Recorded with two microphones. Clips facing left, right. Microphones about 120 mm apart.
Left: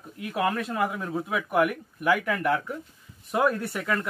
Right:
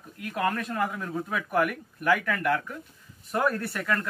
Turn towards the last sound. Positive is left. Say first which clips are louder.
# left 1 dB
turn(degrees=5)  # may be behind; listen again after turning